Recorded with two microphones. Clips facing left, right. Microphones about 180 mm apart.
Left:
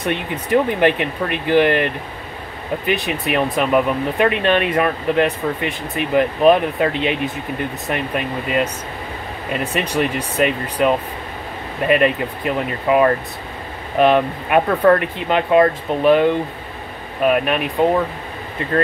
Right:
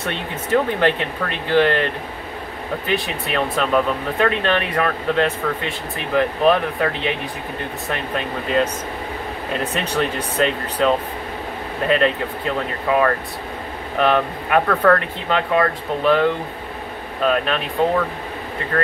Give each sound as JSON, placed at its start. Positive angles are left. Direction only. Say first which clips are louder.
{"t": 0.0, "sound": "speech", "louder": "left 4 dB", "side_deg": 15}
{"t": 2.9, "sound": "speech", "louder": "left 3 dB", "side_deg": 15}